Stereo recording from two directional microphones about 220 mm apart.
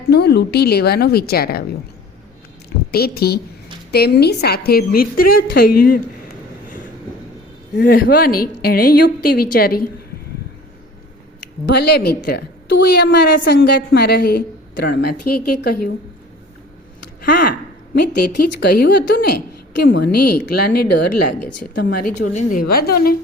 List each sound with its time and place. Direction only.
0.1 s a woman's voice: 50° left (ahead or behind)
2.9 s a woman's voice: 45° left (ahead or behind)
7.8 s a woman's voice: 45° left (ahead or behind)
11.6 s a woman's voice: 50° left (ahead or behind)
17.2 s a woman's voice: 45° left (ahead or behind)